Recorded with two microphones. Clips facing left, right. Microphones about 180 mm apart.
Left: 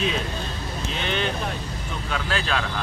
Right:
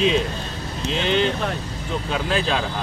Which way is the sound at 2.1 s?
25° right (ahead or behind).